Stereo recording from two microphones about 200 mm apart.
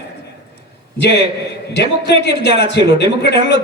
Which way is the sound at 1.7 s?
55° left (ahead or behind).